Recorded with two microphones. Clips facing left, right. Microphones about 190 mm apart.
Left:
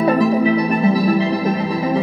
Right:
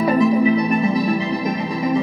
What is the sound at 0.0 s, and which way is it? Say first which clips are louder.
Music: left 1 dB; 35° left (ahead or behind).